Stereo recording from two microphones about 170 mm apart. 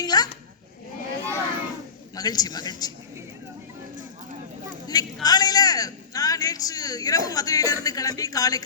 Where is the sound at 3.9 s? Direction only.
50° right (ahead or behind).